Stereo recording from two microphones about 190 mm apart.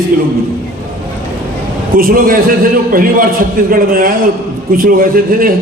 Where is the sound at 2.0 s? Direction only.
50° right (ahead or behind).